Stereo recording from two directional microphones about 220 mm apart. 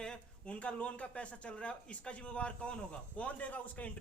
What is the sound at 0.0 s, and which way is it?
Speech, 5° left (ahead or behind).